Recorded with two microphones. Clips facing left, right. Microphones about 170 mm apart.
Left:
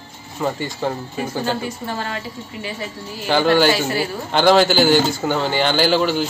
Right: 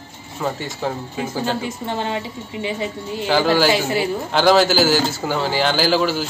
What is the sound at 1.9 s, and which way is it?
A woman's voice, 20° right (ahead or behind).